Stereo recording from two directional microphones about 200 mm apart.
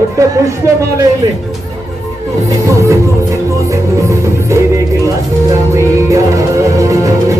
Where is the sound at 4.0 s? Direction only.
15° right (ahead or behind).